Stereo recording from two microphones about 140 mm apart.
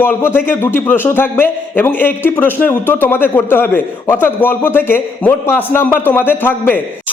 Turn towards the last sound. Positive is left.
turn(degrees=15)  # may be behind; listen again after turning